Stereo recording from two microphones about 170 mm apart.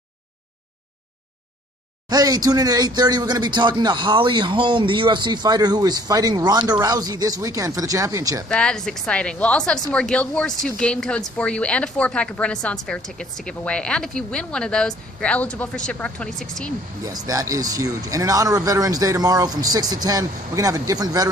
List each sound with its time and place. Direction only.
2.0 s speech: 20° right (ahead or behind)
8.5 s a woman's voice: 5° left (ahead or behind)
17.3 s speech: 20° right (ahead or behind)